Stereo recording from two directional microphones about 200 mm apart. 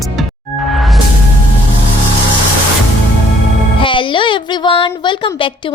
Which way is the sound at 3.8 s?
25° left (ahead or behind).